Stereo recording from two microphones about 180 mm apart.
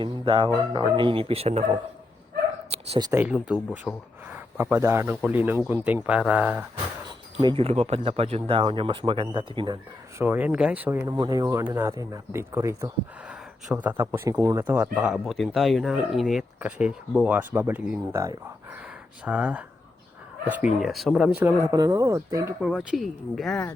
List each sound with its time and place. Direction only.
0.0 s speech: 25° right (ahead or behind)
2.6 s bow-wow: 35° right (ahead or behind)
3.0 s speech: 20° right (ahead or behind)
3.2 s speech: 5° right (ahead or behind)
7.4 s speech: 30° right (ahead or behind)
10.2 s speech: 10° right (ahead or behind)
14.9 s speech: centre (ahead or behind)
21.4 s speech: 20° right (ahead or behind)
22.8 s speech: 5° right (ahead or behind)